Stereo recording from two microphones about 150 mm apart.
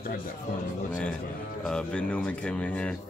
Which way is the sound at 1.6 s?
5° left (ahead or behind).